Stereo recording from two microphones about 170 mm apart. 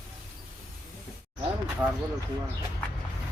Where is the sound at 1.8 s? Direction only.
10° right (ahead or behind).